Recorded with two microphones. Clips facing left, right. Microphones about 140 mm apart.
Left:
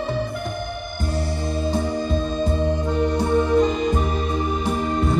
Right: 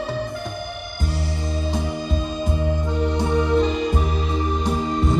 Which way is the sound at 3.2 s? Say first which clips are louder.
Left 1 dB; 50° left (ahead or behind).